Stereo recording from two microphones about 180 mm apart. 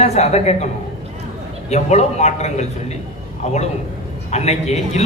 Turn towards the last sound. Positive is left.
turn(degrees=35)  # may be behind; listen again after turning